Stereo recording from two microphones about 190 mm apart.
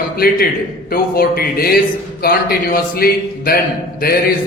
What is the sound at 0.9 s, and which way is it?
A man's voice, 50° left (ahead or behind).